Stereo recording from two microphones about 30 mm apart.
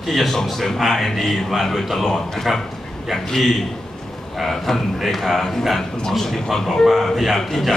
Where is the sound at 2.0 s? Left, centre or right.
Centre.